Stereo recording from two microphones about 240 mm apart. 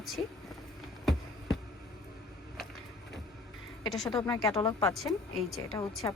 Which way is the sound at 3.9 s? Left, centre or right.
Centre.